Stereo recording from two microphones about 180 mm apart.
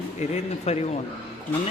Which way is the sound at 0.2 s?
35° left (ahead or behind).